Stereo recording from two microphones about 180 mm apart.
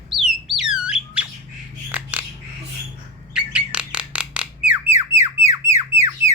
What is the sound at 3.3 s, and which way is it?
Bird, 5° right (ahead or behind).